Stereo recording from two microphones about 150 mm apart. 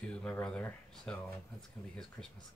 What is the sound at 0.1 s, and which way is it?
Speech, 5° left (ahead or behind).